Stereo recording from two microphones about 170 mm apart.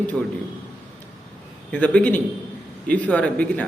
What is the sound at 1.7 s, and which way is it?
A man's voice, 10° left (ahead or behind).